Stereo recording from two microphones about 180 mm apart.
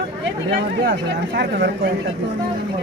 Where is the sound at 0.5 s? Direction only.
70° right (ahead or behind).